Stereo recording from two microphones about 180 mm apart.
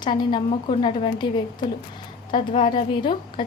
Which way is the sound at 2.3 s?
25° left (ahead or behind).